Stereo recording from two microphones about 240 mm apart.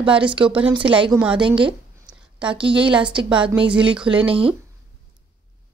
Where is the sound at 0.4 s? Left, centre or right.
Centre.